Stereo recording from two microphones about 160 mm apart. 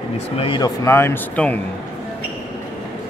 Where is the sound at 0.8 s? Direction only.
15° left (ahead or behind).